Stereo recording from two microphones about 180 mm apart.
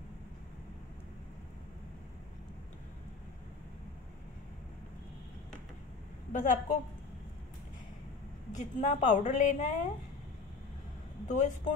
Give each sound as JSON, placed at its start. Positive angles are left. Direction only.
{"t": 6.3, "sound": "a woman's voice", "side_deg": 45}
{"t": 8.5, "sound": "a woman's voice", "side_deg": 45}
{"t": 11.2, "sound": "speech", "side_deg": 40}